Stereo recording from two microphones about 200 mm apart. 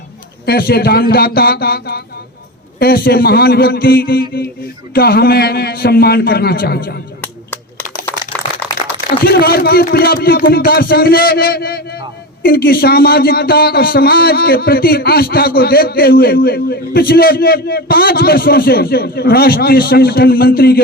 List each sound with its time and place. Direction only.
0.4 s a man's voice: 50° left (ahead or behind)
9.0 s a man's voice: 50° left (ahead or behind)